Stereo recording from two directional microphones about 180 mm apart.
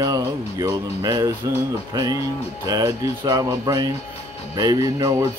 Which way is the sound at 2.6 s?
20° right (ahead or behind).